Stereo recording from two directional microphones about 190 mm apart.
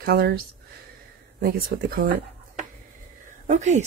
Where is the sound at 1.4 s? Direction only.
50° right (ahead or behind).